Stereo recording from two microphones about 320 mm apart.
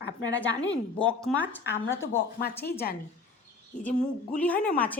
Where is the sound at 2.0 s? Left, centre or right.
Left.